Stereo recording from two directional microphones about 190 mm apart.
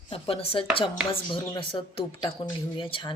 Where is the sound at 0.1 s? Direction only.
30° left (ahead or behind).